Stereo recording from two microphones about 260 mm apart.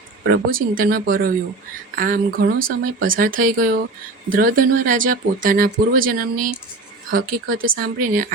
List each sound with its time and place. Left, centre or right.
0.3 s speech: right